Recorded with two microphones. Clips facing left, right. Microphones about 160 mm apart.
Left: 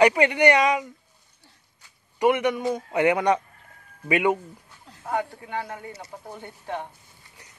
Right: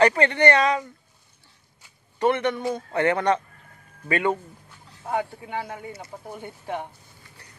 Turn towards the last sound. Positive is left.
turn(degrees=-15)  # may be behind; listen again after turning